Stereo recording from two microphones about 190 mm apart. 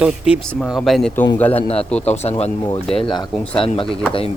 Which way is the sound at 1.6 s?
30° left (ahead or behind).